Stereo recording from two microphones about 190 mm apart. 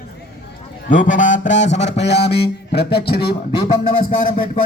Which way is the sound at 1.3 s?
75° left (ahead or behind).